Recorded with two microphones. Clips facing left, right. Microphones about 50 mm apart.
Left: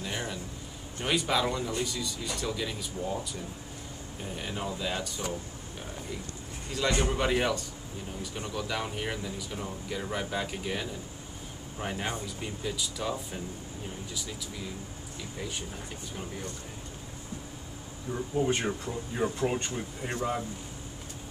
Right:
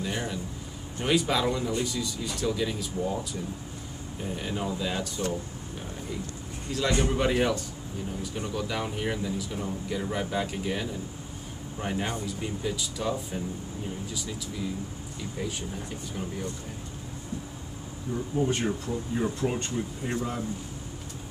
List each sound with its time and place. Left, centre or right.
0.0 s a sound: centre
1.0 s speech: centre
4.2 s speech: centre
6.7 s speech: centre
18.1 s speech: centre
18.4 s speech: centre